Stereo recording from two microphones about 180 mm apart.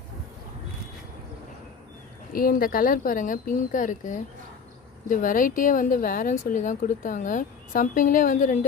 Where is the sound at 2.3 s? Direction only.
55° left (ahead or behind).